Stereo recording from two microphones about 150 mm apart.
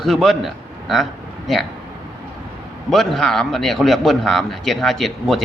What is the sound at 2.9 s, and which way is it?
A man's voice, centre (ahead or behind).